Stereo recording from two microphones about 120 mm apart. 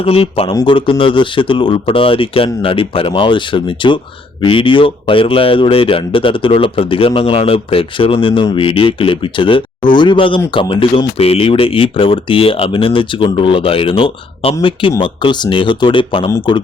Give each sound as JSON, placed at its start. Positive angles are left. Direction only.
{"t": 0.0, "sound": "speech", "side_deg": 55}